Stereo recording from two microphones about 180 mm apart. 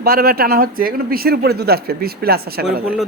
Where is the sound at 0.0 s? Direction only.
55° right (ahead or behind).